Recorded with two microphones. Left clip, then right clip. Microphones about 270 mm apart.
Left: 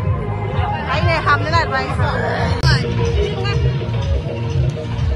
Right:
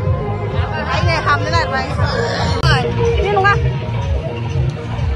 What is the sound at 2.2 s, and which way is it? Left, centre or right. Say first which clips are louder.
Music: right 1 dB; centre.